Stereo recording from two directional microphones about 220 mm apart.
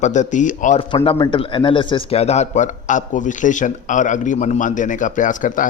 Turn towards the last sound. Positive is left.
turn(degrees=35)  # may be behind; listen again after turning